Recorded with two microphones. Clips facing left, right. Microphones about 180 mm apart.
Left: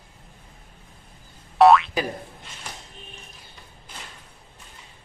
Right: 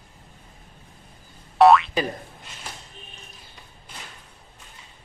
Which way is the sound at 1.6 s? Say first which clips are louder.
Even; centre (ahead or behind).